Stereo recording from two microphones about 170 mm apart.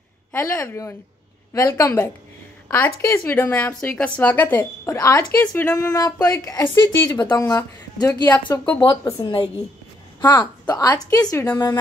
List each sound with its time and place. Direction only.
0.3 s a woman's voice: 15° left (ahead or behind)
10.9 s speech: 20° left (ahead or behind)